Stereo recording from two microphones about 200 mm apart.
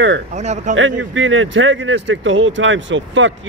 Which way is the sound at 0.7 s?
75° right (ahead or behind).